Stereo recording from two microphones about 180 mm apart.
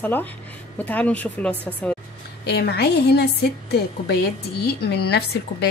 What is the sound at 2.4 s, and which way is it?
Speech, 65° left (ahead or behind).